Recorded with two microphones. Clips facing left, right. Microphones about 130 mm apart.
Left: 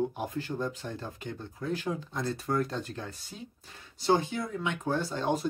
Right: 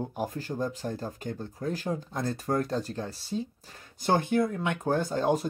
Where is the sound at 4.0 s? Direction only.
50° right (ahead or behind).